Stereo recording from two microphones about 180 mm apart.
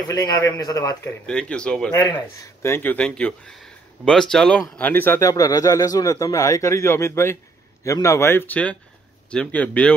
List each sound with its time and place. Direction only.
0.1 s a man's voice: 20° left (ahead or behind)
1.2 s speech: 5° left (ahead or behind)
2.0 s speech: 20° left (ahead or behind)